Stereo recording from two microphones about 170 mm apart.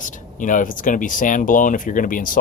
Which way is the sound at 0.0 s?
50° left (ahead or behind).